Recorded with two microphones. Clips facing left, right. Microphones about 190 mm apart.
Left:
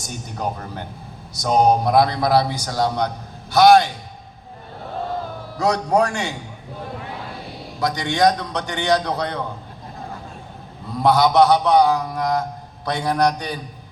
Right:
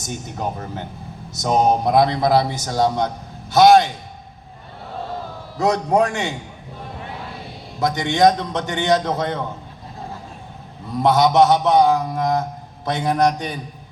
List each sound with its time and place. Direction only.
0.0 s a man's voice: 20° right (ahead or behind)
5.5 s a man's voice: 20° right (ahead or behind)
7.8 s a man's voice: 20° right (ahead or behind)
11.0 s a man's voice: 20° right (ahead or behind)